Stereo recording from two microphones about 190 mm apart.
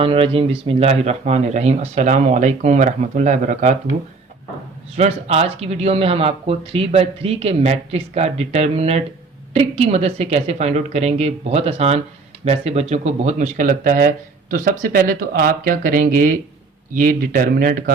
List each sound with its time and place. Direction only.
0.0 s speech: 30° right (ahead or behind)
4.9 s speech: 35° right (ahead or behind)